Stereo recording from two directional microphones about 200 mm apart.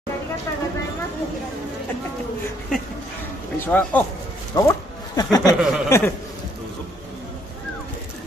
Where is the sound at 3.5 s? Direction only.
10° left (ahead or behind).